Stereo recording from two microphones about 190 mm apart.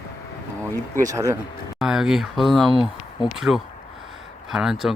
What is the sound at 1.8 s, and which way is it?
Speech, centre (ahead or behind).